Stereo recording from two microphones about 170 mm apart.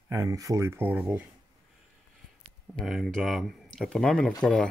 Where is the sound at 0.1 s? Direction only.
20° right (ahead or behind).